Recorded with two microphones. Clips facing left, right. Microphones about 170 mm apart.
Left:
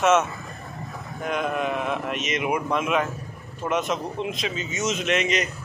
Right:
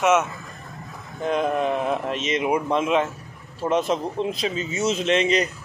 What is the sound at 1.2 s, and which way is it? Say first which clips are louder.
A man's voice: right 4 dB; 30° right (ahead or behind).